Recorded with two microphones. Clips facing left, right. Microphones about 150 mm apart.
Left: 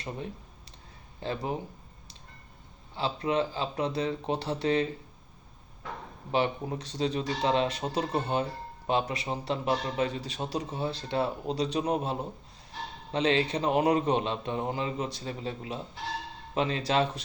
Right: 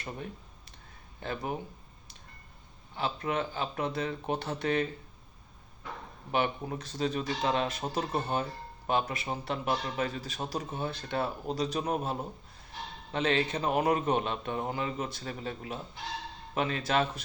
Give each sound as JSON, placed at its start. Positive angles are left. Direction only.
{"t": 1.2, "sound": "speech", "side_deg": 30}
{"t": 2.9, "sound": "speech", "side_deg": 30}
{"t": 6.3, "sound": "speech", "side_deg": 30}
{"t": 13.1, "sound": "speech", "side_deg": 25}